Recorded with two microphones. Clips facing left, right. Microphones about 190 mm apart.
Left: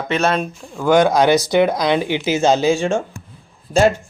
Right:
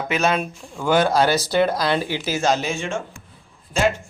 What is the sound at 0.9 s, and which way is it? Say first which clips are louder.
Speech: left 4 dB; 15° left (ahead or behind).